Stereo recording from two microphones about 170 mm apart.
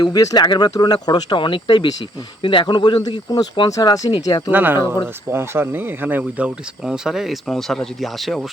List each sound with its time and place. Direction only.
0.0 s speech: 20° left (ahead or behind)
4.5 s speech: 10° right (ahead or behind)